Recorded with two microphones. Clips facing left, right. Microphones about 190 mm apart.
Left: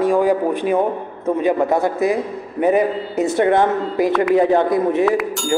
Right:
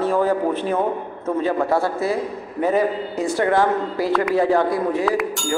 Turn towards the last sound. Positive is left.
turn(degrees=0)  # may be behind; listen again after turning